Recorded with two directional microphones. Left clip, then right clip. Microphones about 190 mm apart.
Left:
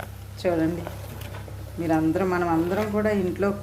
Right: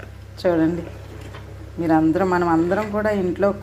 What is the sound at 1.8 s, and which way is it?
A man's voice, 5° right (ahead or behind).